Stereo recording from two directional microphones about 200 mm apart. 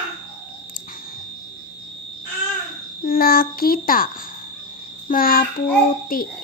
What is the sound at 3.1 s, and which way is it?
A child's voice, 45° left (ahead or behind).